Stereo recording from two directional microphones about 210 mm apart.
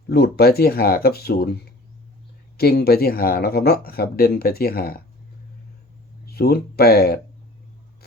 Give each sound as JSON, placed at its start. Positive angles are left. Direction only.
{"t": 0.1, "sound": "speech", "side_deg": 50}
{"t": 2.6, "sound": "speech", "side_deg": 50}
{"t": 6.2, "sound": "speech", "side_deg": 50}